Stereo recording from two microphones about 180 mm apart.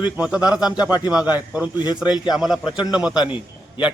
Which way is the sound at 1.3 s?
10° right (ahead or behind).